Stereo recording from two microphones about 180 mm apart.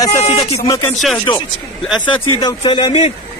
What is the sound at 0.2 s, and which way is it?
Speech, 35° left (ahead or behind).